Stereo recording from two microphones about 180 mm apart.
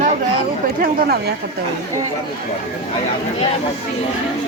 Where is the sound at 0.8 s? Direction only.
60° right (ahead or behind).